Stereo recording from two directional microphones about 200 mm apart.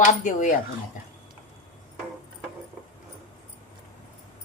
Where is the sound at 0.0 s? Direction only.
40° left (ahead or behind).